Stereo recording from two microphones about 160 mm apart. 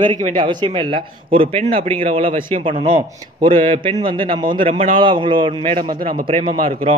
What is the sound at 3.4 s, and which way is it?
A man's voice, 30° right (ahead or behind).